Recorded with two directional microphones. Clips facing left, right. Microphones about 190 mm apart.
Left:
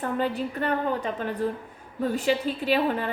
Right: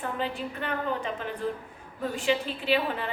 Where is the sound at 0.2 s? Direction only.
40° left (ahead or behind).